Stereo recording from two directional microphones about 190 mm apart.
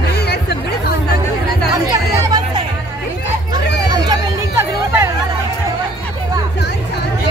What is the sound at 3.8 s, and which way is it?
Music, 20° right (ahead or behind).